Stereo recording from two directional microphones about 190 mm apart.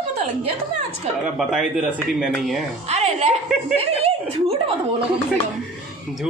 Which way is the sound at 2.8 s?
35° right (ahead or behind).